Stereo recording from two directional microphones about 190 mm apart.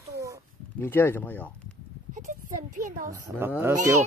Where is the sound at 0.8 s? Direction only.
10° left (ahead or behind).